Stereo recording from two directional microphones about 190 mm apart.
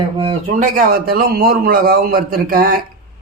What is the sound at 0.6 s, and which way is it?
A man's voice, 50° right (ahead or behind).